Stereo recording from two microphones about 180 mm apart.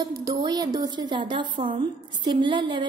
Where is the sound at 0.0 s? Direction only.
20° right (ahead or behind).